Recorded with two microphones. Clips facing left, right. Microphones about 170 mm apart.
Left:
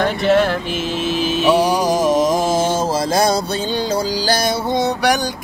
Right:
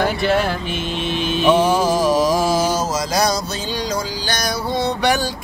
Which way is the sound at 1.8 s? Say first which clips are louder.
Left 1 dB; 20° left (ahead or behind).